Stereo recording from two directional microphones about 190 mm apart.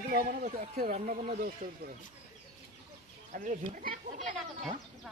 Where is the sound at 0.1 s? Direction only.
50° right (ahead or behind).